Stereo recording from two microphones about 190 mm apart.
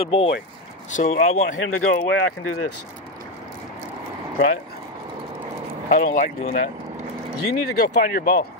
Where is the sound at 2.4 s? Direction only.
90° left.